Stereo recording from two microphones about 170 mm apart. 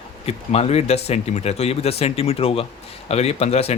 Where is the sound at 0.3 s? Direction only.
35° left (ahead or behind).